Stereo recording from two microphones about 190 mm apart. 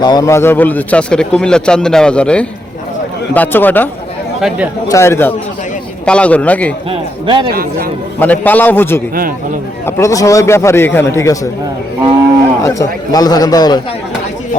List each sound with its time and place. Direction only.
0.0 s a man's voice: 20° left (ahead or behind)
4.4 s speech: 5° right (ahead or behind)
4.9 s a man's voice: 15° left (ahead or behind)
6.9 s a man's voice: 25° right (ahead or behind)
8.2 s a man's voice: 10° left (ahead or behind)
12.6 s a man's voice: 20° left (ahead or behind)